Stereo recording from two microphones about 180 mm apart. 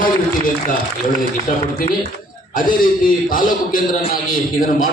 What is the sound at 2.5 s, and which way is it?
A man's voice, 50° left (ahead or behind).